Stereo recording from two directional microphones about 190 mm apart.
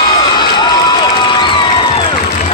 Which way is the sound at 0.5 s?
25° left (ahead or behind).